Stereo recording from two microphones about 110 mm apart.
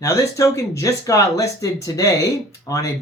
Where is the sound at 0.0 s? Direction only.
30° left (ahead or behind).